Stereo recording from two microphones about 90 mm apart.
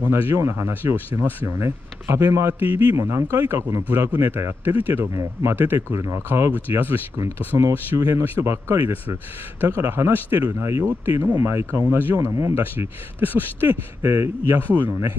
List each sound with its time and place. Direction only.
0.0 s speech: 30° right (ahead or behind)
3.0 s speech: 35° right (ahead or behind)
8.7 s speech: 20° right (ahead or behind)